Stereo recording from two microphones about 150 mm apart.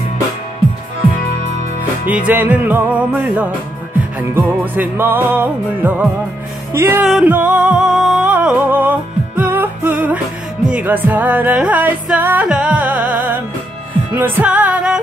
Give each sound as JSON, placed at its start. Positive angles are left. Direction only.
{"t": 2.0, "sound": "music", "side_deg": -10}